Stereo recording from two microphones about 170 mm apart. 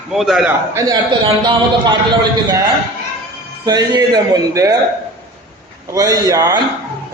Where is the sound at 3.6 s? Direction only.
25° right (ahead or behind).